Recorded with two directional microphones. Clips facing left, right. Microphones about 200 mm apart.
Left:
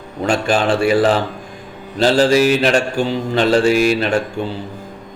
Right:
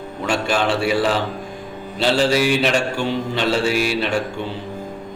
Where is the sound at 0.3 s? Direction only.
50° left (ahead or behind).